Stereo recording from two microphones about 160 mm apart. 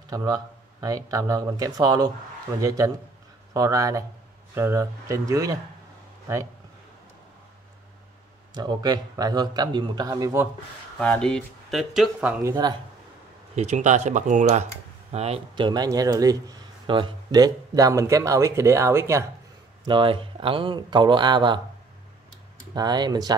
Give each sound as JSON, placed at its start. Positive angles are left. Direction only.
{"t": 0.1, "sound": "speech", "side_deg": -25}
{"t": 8.5, "sound": "speech", "side_deg": -25}
{"t": 11.0, "sound": "speech", "side_deg": 5}
{"t": 13.6, "sound": "speech", "side_deg": -45}
{"t": 19.9, "sound": "speech", "side_deg": -30}
{"t": 22.8, "sound": "speech", "side_deg": -25}